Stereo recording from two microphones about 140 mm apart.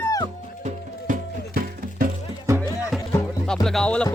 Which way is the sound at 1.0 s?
70° right (ahead or behind).